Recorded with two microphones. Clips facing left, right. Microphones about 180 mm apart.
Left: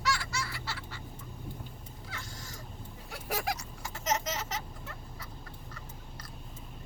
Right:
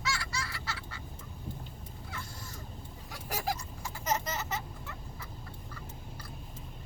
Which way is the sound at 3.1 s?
65° left (ahead or behind).